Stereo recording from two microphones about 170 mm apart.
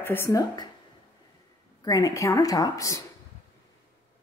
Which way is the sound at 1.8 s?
20° left (ahead or behind).